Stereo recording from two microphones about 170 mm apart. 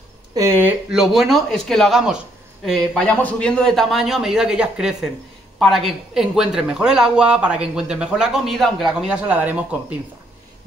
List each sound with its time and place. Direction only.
0.3 s speech: 20° right (ahead or behind)
0.9 s speech: centre (ahead or behind)